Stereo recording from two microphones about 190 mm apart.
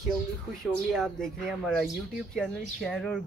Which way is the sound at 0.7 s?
Centre (ahead or behind).